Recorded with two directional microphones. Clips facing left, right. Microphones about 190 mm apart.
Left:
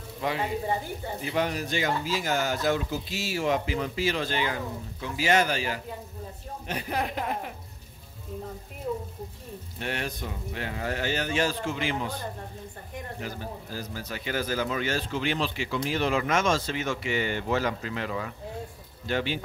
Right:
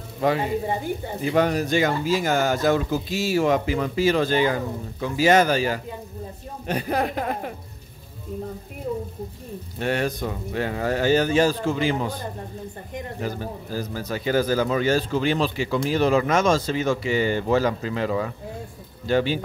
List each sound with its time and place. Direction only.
1.3 s speech: 45° right (ahead or behind)
9.8 s speech: 45° right (ahead or behind)
13.7 s speech: 45° right (ahead or behind)